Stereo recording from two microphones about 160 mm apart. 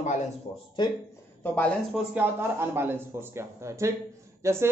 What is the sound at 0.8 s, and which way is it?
Speech, 30° left (ahead or behind).